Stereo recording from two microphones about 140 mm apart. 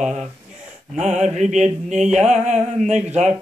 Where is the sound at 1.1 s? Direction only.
55° right (ahead or behind).